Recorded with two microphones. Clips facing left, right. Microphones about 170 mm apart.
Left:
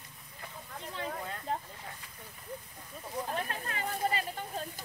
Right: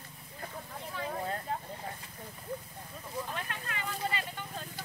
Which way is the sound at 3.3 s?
35° left (ahead or behind).